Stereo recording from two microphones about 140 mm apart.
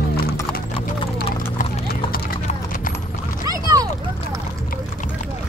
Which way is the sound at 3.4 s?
25° right (ahead or behind).